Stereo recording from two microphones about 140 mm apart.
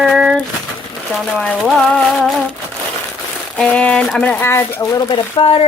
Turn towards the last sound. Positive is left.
turn(degrees=40)  # may be behind; listen again after turning